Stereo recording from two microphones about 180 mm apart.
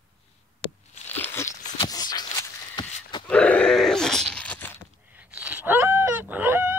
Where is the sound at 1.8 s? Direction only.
20° left (ahead or behind).